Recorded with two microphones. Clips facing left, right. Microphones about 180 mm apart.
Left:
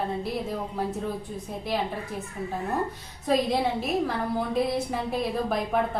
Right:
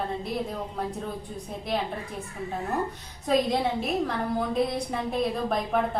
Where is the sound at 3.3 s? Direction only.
Centre (ahead or behind).